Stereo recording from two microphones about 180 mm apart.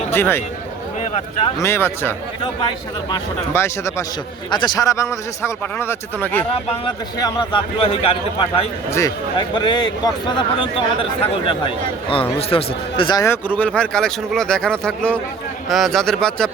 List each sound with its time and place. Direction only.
0.1 s speech: 15° left (ahead or behind)
1.5 s speech: 15° left (ahead or behind)
6.8 s speech: 25° left (ahead or behind)
8.9 s speech: 20° left (ahead or behind); by 16.5 s centre (ahead or behind)